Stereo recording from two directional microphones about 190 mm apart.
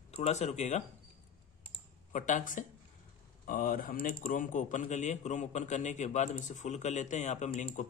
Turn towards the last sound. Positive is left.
turn(degrees=35)  # may be behind; listen again after turning